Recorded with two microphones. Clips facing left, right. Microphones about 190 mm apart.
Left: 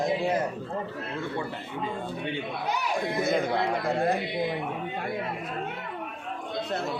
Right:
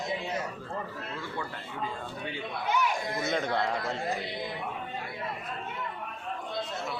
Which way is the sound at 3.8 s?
60° left (ahead or behind).